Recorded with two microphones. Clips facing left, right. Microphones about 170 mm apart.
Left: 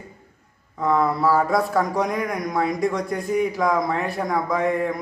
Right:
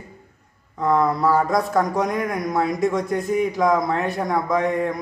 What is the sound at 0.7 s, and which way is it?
Speech, centre (ahead or behind).